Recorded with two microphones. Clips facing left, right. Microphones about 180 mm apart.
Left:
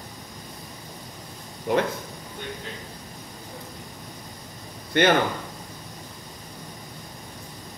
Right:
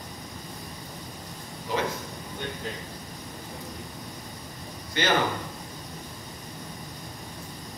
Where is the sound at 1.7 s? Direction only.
60° left (ahead or behind).